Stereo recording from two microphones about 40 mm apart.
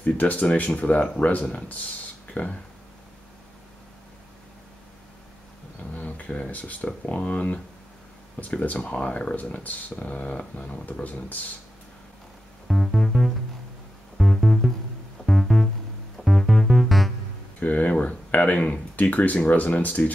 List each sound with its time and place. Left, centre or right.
0.0 s speech: left
5.9 s speech: left
11.1 s speech: left
12.6 s music: centre
17.6 s speech: left